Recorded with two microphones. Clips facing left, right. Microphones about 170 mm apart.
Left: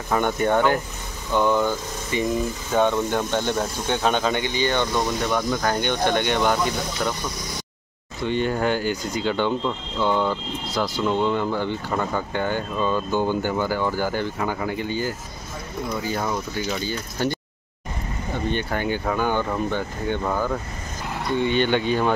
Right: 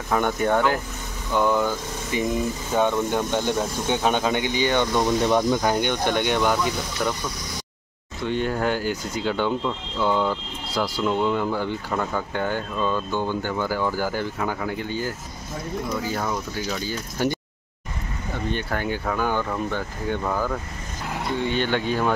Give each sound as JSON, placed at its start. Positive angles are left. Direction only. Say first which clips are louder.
{"t": 0.1, "sound": "speech", "louder": "left 1 dB", "side_deg": 0}
{"t": 5.2, "sound": "speech", "louder": "right 3 dB", "side_deg": -25}
{"t": 5.6, "sound": "speech", "louder": "even", "side_deg": -10}
{"t": 8.2, "sound": "speech", "louder": "left 1 dB", "side_deg": 0}
{"t": 18.5, "sound": "speech", "louder": "left 1 dB", "side_deg": 0}